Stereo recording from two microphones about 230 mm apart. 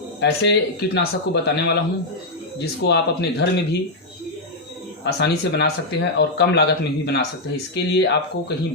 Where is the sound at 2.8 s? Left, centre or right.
Left.